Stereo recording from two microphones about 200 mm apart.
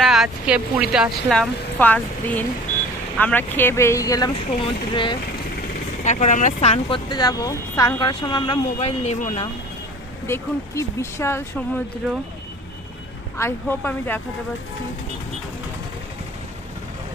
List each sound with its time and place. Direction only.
0.0 s speech: centre (ahead or behind); by 5.1 s 25° left (ahead or behind)
6.1 s speech: 35° left (ahead or behind)
7.1 s speech: 20° left (ahead or behind)
8.8 s speech: 30° left (ahead or behind)
10.2 s speech: 15° left (ahead or behind)
13.3 s speech: 10° left (ahead or behind)